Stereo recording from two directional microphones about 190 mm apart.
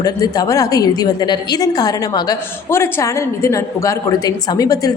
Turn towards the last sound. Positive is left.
turn(degrees=20)  # may be behind; listen again after turning